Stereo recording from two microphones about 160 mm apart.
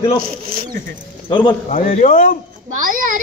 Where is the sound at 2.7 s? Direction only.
55° right (ahead or behind).